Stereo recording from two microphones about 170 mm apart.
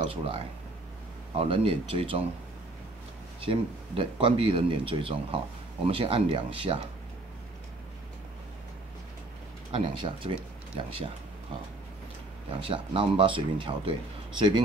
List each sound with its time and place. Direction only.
0.0 s speech: 35° right (ahead or behind)
3.3 s speech: 30° right (ahead or behind)
9.7 s speech: 30° right (ahead or behind)
12.4 s speech: 30° right (ahead or behind)